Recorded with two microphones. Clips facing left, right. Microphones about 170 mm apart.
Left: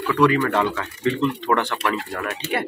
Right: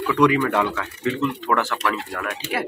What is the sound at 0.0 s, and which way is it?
Speech, 10° right (ahead or behind).